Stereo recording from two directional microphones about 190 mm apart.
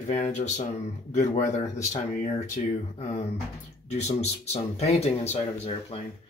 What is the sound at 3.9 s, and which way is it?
Speech, 35° left (ahead or behind).